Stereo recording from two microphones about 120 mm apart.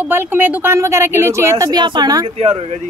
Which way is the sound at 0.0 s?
15° right (ahead or behind).